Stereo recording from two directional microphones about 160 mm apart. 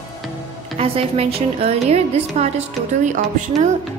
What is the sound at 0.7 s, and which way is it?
A woman's voice, 40° right (ahead or behind).